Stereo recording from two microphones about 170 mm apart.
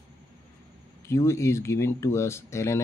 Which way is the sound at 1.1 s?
15° left (ahead or behind).